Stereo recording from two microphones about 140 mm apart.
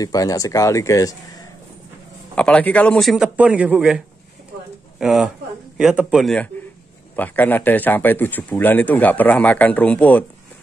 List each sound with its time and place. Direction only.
0.0 s speech: 25° left (ahead or behind)
2.3 s a man's voice: 10° left (ahead or behind)
5.0 s a man's voice: 5° right (ahead or behind)